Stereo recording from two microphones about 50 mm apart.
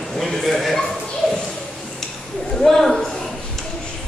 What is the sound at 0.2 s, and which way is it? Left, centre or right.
Speech, centre.